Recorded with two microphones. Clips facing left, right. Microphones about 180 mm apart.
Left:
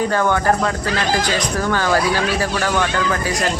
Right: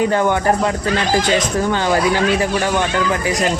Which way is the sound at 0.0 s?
20° right (ahead or behind).